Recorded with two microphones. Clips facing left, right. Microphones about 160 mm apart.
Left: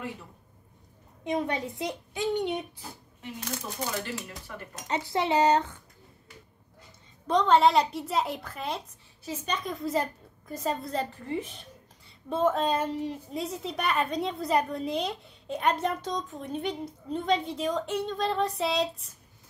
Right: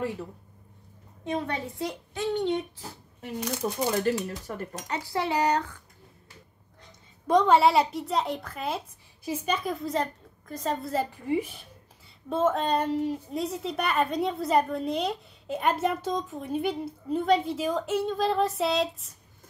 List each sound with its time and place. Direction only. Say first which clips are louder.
1.2 s a woman's voice: left 1 dB; 15° left (ahead or behind)
3.6 s speech: right 10 dB; 40° right (ahead or behind)
4.8 s speech: left 2 dB; 25° left (ahead or behind)
7.2 s a woman's voice: right 1 dB; 10° right (ahead or behind)